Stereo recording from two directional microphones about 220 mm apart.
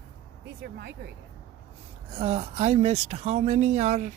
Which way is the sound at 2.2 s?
25° right (ahead or behind).